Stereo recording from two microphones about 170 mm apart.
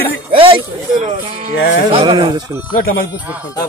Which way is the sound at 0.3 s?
30° right (ahead or behind).